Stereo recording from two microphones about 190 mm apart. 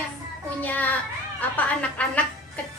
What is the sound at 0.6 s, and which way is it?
A woman's voice, 10° left (ahead or behind).